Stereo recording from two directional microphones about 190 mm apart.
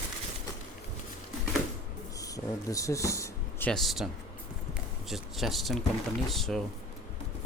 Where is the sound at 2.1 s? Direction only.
20° left (ahead or behind).